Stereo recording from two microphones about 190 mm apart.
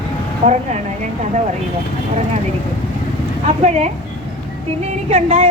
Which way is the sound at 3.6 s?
35° right (ahead or behind).